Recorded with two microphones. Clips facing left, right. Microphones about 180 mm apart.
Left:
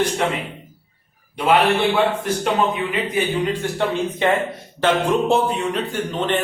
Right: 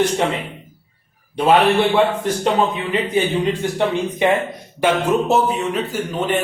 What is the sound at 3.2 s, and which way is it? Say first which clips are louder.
Speech: right 3 dB; 25° right (ahead or behind).